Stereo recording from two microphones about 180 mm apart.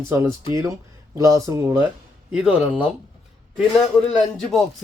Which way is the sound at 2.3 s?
5° right (ahead or behind).